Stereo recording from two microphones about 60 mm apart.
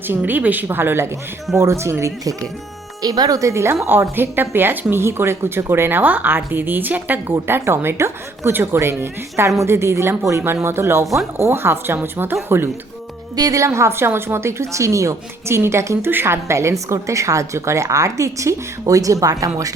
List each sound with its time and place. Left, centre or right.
0.1 s speech: right
1.5 s a woman's voice: right
3.0 s speech: right
3.5 s a woman's voice: right
4.1 s speech: right
7.4 s a woman's voice: right
11.0 s speech: centre
11.3 s speech: right
13.3 s a woman's voice: right
13.7 s a woman's voice: right
16.0 s a woman's voice: right